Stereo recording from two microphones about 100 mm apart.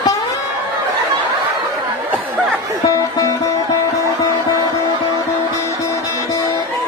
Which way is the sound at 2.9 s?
35° left (ahead or behind).